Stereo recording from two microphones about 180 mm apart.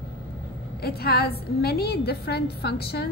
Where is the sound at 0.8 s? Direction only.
60° left (ahead or behind).